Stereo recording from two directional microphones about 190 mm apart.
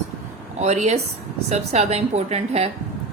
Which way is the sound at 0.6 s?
35° right (ahead or behind).